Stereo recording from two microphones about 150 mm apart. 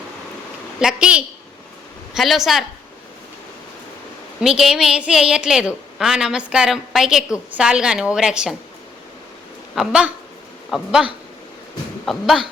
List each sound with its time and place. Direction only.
0.8 s a woman's voice: 5° right (ahead or behind)
4.4 s a woman's voice: 5° right (ahead or behind)
9.7 s a woman's voice: 5° right (ahead or behind)